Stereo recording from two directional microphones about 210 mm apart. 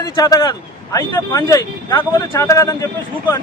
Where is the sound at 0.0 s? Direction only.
15° left (ahead or behind).